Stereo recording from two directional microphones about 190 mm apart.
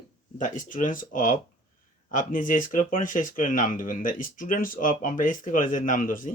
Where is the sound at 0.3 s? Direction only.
45° left (ahead or behind).